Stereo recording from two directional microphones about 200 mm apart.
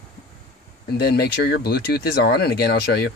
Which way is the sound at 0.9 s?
55° left (ahead or behind).